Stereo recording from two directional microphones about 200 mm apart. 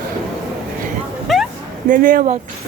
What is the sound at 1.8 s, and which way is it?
Speech, 45° right (ahead or behind).